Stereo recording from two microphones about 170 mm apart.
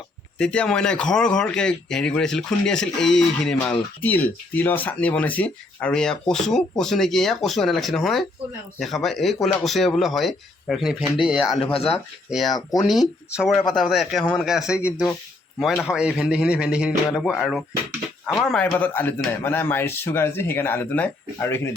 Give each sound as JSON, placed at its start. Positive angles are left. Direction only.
{"t": 0.3, "sound": "speech", "side_deg": 5}
{"t": 11.6, "sound": "speech", "side_deg": 35}
{"t": 12.5, "sound": "speech", "side_deg": 25}
{"t": 12.9, "sound": "a man's voice", "side_deg": -5}